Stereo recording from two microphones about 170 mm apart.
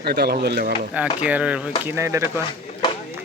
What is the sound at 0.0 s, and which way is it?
Speech, 70° right (ahead or behind).